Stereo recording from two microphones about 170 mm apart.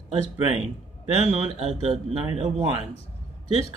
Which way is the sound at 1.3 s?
40° right (ahead or behind).